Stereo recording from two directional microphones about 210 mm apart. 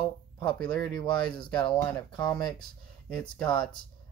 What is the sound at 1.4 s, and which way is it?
Speech, 20° left (ahead or behind).